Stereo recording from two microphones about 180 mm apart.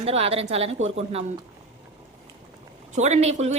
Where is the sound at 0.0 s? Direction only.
35° right (ahead or behind).